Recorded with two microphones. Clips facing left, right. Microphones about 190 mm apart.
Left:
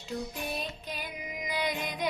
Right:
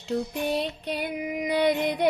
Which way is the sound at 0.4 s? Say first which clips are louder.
Right 9 dB; 75° right (ahead or behind).